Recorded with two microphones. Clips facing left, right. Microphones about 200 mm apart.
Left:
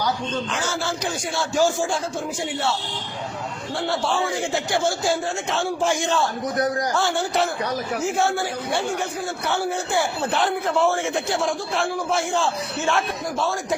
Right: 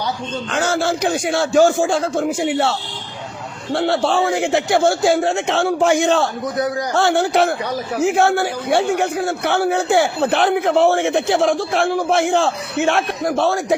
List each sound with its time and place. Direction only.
0.5 s a man's voice: 65° right (ahead or behind)
3.8 s a man's voice: 70° right (ahead or behind)